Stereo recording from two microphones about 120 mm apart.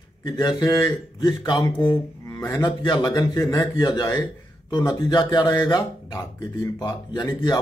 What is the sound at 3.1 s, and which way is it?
A man's voice, 25° left (ahead or behind).